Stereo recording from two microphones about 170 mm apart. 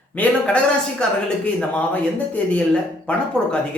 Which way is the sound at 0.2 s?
5° left (ahead or behind).